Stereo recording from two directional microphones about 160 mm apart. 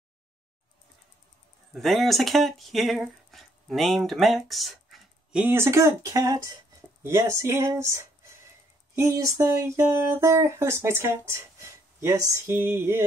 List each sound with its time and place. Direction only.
1.7 s speech: centre (ahead or behind)